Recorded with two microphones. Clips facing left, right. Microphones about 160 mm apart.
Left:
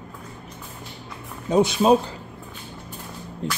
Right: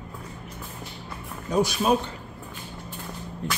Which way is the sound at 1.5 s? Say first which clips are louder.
Left 5 dB; 25° left (ahead or behind).